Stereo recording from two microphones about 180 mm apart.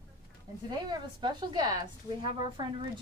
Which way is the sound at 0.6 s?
25° right (ahead or behind).